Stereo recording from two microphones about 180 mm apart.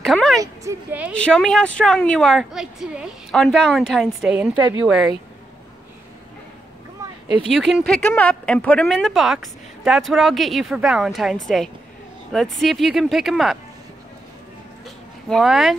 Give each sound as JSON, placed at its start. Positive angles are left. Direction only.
{"t": 0.0, "sound": "speech", "side_deg": 0}
{"t": 0.4, "sound": "a woman's voice", "side_deg": -15}
{"t": 1.1, "sound": "speech", "side_deg": 5}
{"t": 7.4, "sound": "speech", "side_deg": 0}
{"t": 15.2, "sound": "speech", "side_deg": 0}